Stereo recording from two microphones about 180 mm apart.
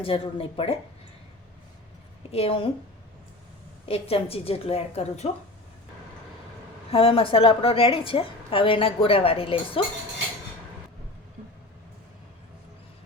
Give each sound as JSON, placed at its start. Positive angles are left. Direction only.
{"t": 0.0, "sound": "a woman's voice", "side_deg": 30}
{"t": 2.3, "sound": "a woman's voice", "side_deg": 30}
{"t": 3.8, "sound": "a woman's voice", "side_deg": 35}
{"t": 6.9, "sound": "a woman's voice", "side_deg": 30}